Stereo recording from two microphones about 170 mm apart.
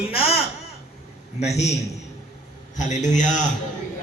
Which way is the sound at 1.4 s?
40° left (ahead or behind).